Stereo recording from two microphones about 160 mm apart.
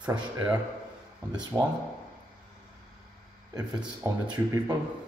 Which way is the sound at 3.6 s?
25° right (ahead or behind).